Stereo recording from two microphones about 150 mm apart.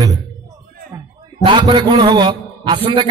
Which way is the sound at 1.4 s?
30° right (ahead or behind).